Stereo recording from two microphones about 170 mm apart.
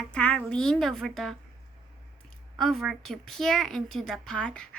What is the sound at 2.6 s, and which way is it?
A woman's voice, centre (ahead or behind).